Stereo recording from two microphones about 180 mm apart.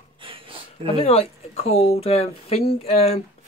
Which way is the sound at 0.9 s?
35° left (ahead or behind).